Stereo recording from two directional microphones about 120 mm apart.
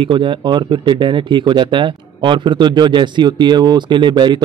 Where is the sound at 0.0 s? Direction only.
45° right (ahead or behind).